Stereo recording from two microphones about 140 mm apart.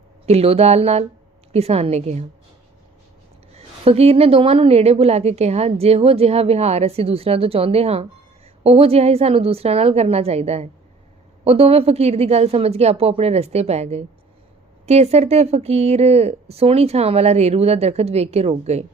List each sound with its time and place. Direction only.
0.3 s a woman's voice: 45° right (ahead or behind)
3.8 s a woman's voice: 45° right (ahead or behind)